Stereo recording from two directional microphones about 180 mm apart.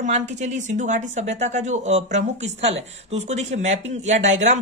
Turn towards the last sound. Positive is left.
turn(degrees=-40)  # may be behind; listen again after turning